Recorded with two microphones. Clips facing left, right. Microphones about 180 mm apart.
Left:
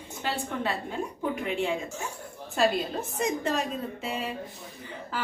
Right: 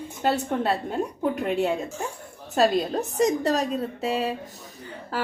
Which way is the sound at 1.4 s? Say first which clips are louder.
Right 5 dB; 40° right (ahead or behind).